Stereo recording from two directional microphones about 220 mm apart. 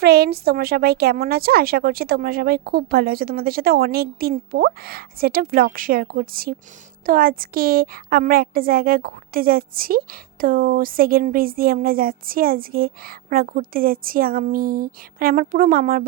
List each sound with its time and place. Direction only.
0.0 s a woman's voice: 45° right (ahead or behind)